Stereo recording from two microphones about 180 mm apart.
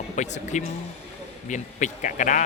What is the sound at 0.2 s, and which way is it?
Speech, 40° left (ahead or behind).